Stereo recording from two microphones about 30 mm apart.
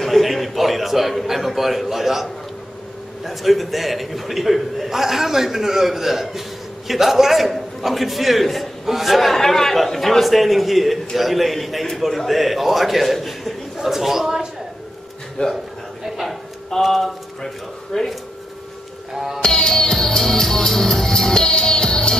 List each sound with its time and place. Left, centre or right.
0.0 s a man's voice: centre
3.3 s a man's voice: centre
15.4 s a man's voice: left
16.8 s a man's voice: centre
17.9 s speech: left
19.1 s a man's voice: centre
19.4 s music: left